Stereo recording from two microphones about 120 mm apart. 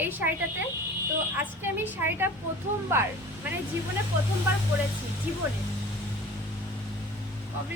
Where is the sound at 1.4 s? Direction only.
15° right (ahead or behind).